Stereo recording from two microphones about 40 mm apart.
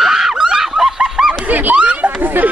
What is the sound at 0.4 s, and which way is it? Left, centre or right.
Goose, centre.